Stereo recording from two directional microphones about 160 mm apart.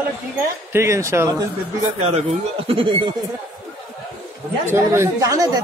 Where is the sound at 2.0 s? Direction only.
40° right (ahead or behind).